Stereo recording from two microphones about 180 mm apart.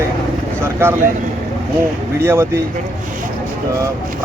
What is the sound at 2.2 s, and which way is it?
Speech, 15° right (ahead or behind).